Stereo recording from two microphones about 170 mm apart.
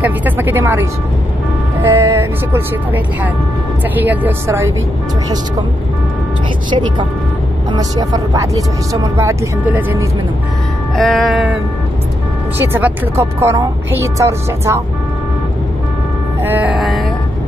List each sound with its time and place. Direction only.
0.0 s speech: 10° right (ahead or behind)
4.0 s speech: 10° right (ahead or behind)
7.7 s speech: 20° right (ahead or behind)
11.0 s music: centre (ahead or behind)
12.7 s speech: 15° right (ahead or behind)
16.4 s music: 10° right (ahead or behind)